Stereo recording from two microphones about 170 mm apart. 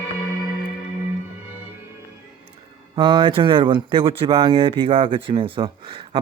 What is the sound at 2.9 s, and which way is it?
Speech, 25° right (ahead or behind).